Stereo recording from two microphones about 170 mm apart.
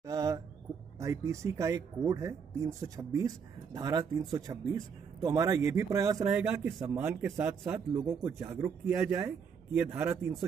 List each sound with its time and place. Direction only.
0.0 s a sound: 20° right (ahead or behind)
0.9 s speech: 20° right (ahead or behind)
6.3 s speech: 5° right (ahead or behind)